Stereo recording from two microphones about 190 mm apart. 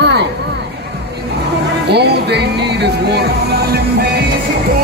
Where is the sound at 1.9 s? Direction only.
60° right (ahead or behind).